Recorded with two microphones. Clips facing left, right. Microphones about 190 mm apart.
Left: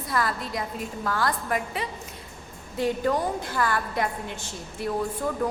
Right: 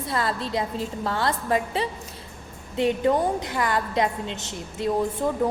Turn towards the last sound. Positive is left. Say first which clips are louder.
# right 4 dB
turn(degrees=-20)  # may be behind; listen again after turning